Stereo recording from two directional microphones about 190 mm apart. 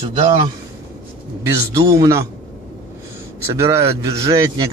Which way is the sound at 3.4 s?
15° right (ahead or behind).